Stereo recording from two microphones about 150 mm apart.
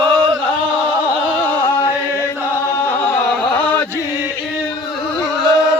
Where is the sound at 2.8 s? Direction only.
15° left (ahead or behind).